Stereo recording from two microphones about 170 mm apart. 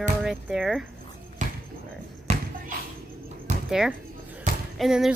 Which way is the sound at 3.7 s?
5° right (ahead or behind).